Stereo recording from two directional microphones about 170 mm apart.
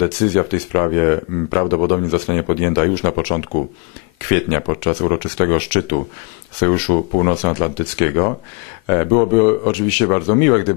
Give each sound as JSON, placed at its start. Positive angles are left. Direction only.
{"t": 0.0, "sound": "speech", "side_deg": 15}
{"t": 4.3, "sound": "speech", "side_deg": 15}
{"t": 7.9, "sound": "speech", "side_deg": 15}